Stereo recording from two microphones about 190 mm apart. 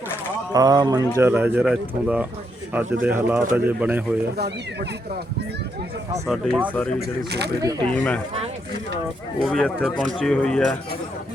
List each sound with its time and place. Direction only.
0.5 s speech: 20° right (ahead or behind)
4.4 s speech: 60° right (ahead or behind)
6.2 s speech: centre (ahead or behind)
7.3 s speech: 60° right (ahead or behind)
7.9 s speech: 5° left (ahead or behind)
9.4 s speech: centre (ahead or behind)